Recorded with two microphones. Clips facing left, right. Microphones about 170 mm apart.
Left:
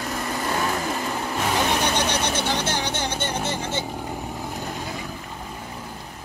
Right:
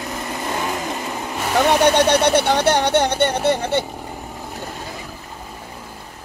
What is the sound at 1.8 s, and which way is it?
Speech, 60° right (ahead or behind).